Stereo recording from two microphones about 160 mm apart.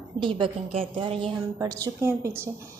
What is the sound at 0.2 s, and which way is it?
A woman's voice, 35° right (ahead or behind).